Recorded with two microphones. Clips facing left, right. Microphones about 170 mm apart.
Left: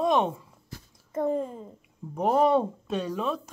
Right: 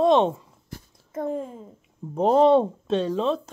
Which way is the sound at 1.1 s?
Centre (ahead or behind).